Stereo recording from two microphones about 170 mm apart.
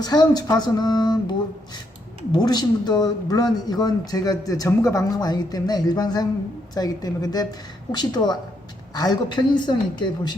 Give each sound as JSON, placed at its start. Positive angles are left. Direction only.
{"t": 0.0, "sound": "speech", "side_deg": 25}